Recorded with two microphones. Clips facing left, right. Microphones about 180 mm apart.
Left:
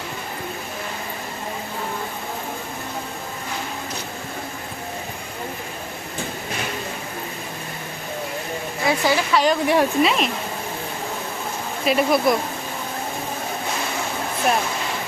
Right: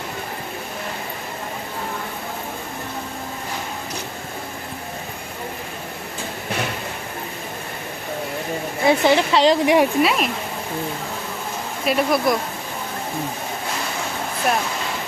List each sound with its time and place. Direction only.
8.9 s speech: 25° right (ahead or behind); by 10.2 s 5° right (ahead or behind)
11.9 s speech: centre (ahead or behind)